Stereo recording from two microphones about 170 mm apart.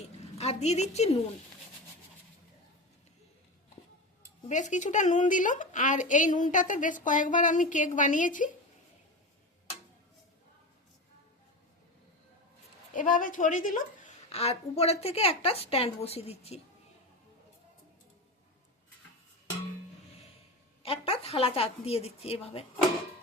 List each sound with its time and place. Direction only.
0.3 s a woman's voice: 40° left (ahead or behind)
4.4 s a woman's voice: 45° left (ahead or behind)
12.9 s a woman's voice: 50° left (ahead or behind)
14.3 s a woman's voice: 35° left (ahead or behind)
20.8 s a woman's voice: 35° left (ahead or behind)